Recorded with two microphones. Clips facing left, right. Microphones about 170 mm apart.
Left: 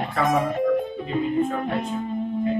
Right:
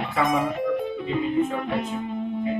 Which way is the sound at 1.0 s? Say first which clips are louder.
Even; 45° left (ahead or behind).